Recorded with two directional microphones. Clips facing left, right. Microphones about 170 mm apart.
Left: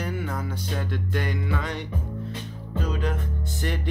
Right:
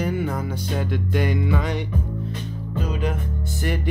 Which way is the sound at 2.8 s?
10° right (ahead or behind).